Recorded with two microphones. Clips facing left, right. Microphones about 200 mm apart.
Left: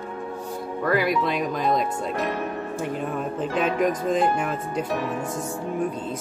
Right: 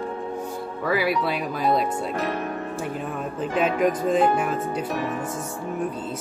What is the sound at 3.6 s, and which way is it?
Speech, 10° right (ahead or behind).